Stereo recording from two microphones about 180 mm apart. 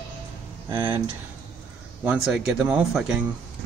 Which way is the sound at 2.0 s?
5° right (ahead or behind).